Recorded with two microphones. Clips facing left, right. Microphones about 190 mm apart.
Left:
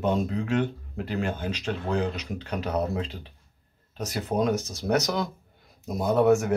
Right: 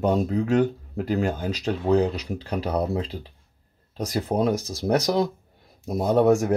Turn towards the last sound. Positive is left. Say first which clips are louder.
# right 2 dB
turn(degrees=-35)  # may be behind; listen again after turning